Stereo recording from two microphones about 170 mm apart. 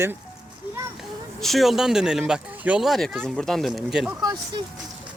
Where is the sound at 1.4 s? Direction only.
Centre (ahead or behind).